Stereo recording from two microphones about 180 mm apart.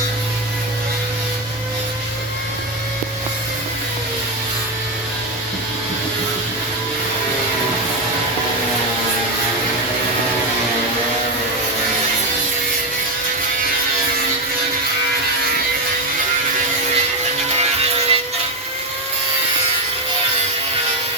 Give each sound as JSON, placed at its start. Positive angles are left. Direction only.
{"t": 17.6, "sound": "music", "side_deg": -35}